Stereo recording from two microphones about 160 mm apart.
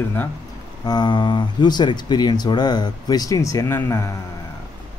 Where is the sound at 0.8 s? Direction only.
25° left (ahead or behind).